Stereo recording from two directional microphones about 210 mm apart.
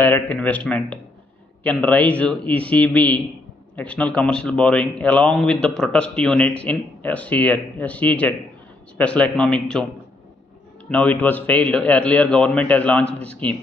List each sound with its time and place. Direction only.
0.0 s a man's voice: 5° left (ahead or behind)
10.9 s a man's voice: 5° left (ahead or behind)